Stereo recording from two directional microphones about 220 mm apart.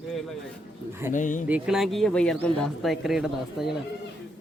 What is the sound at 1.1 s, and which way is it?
Speech, 35° left (ahead or behind).